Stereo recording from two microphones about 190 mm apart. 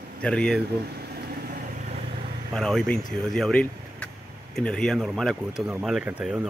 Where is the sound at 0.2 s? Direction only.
5° left (ahead or behind).